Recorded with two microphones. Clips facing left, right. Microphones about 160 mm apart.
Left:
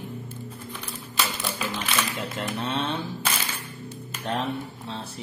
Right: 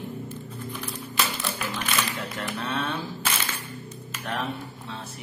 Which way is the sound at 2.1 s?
20° left (ahead or behind).